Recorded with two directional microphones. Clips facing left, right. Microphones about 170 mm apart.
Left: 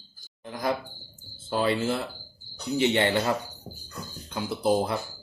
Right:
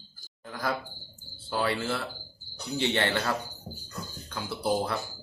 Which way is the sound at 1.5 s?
20° left (ahead or behind).